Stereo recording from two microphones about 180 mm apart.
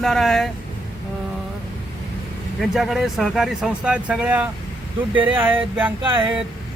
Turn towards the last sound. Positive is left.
turn(degrees=-25)  # may be behind; listen again after turning